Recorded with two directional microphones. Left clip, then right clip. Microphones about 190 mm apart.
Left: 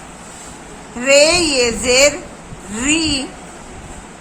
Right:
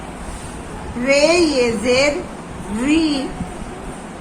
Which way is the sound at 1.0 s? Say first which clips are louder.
Left 3 dB; 35° left (ahead or behind).